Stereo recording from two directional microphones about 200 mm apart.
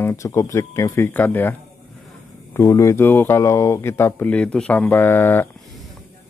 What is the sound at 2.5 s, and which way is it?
A man's voice, 15° left (ahead or behind).